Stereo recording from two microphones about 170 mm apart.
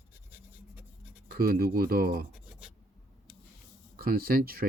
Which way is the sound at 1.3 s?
60° right (ahead or behind).